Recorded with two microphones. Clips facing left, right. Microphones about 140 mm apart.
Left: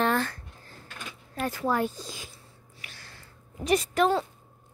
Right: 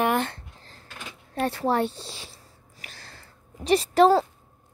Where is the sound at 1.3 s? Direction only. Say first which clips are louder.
Right 4 dB; 30° right (ahead or behind).